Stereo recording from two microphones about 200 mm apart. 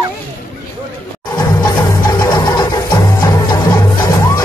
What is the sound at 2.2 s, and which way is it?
Music, 20° left (ahead or behind).